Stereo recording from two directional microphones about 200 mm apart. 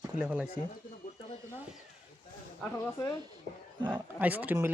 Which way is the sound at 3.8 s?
10° right (ahead or behind).